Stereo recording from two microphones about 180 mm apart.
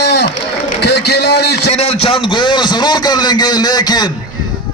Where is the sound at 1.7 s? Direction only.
35° left (ahead or behind).